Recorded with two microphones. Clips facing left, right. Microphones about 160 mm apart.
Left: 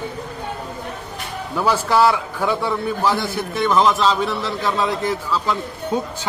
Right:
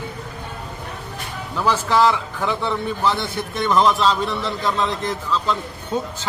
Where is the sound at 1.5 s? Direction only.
10° left (ahead or behind).